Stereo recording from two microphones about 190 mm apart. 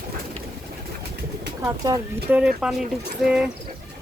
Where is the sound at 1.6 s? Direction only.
20° right (ahead or behind).